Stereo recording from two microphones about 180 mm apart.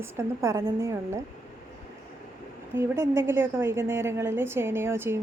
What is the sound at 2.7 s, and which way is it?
Speech, 15° right (ahead or behind).